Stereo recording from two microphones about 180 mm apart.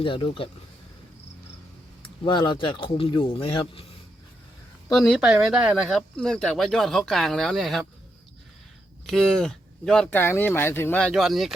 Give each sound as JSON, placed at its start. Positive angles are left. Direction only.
{"t": 0.0, "sound": "speech", "side_deg": 30}
{"t": 2.0, "sound": "speech", "side_deg": 25}
{"t": 4.9, "sound": "speech", "side_deg": 0}
{"t": 9.0, "sound": "speech", "side_deg": 5}
{"t": 11.1, "sound": "speech", "side_deg": 0}